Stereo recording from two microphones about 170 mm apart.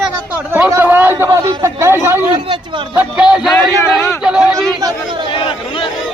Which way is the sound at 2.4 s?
30° right (ahead or behind).